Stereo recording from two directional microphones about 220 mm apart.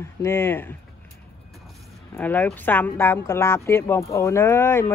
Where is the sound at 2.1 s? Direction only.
5° left (ahead or behind).